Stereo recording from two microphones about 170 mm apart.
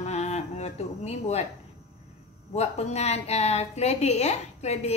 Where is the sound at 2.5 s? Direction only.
40° left (ahead or behind).